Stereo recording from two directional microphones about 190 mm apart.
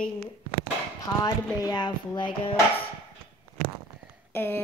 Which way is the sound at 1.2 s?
20° left (ahead or behind).